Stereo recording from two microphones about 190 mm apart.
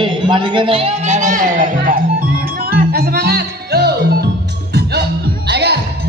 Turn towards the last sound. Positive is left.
turn(degrees=-60)  # may be behind; listen again after turning